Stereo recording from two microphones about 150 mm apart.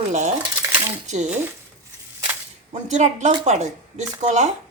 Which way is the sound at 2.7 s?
50° right (ahead or behind).